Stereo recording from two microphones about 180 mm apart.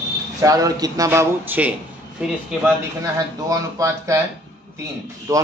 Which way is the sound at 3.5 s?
20° right (ahead or behind).